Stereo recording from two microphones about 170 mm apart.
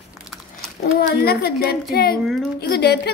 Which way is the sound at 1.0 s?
65° left (ahead or behind).